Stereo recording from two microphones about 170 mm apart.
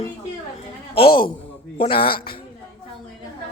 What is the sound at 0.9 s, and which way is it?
A man's voice, 30° left (ahead or behind).